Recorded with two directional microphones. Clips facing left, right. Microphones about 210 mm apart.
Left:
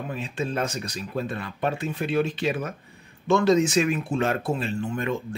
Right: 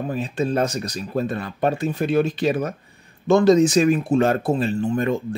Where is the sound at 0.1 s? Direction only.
40° right (ahead or behind).